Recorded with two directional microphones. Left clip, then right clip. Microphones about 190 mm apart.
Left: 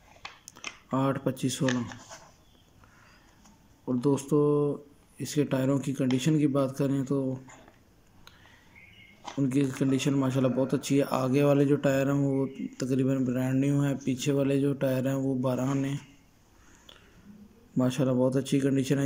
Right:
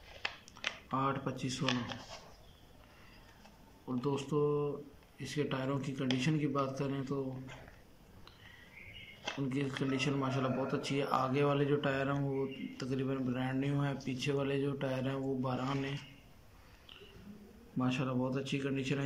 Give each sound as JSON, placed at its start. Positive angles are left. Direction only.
{"t": 0.5, "sound": "speech", "side_deg": 25}
{"t": 3.8, "sound": "speech", "side_deg": 25}
{"t": 9.5, "sound": "speech", "side_deg": 25}
{"t": 17.7, "sound": "speech", "side_deg": 30}